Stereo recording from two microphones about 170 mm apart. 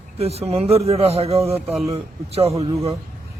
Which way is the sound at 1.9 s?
35° right (ahead or behind).